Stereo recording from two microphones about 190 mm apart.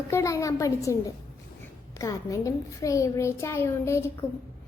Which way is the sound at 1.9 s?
15° left (ahead or behind).